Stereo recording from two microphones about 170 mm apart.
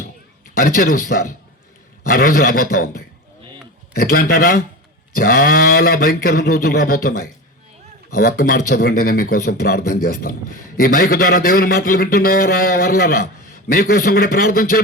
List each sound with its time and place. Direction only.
0.5 s a man's voice: 60° left (ahead or behind)